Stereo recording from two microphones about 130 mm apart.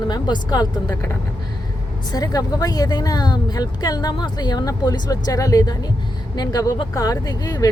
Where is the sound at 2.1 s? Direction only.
30° left (ahead or behind).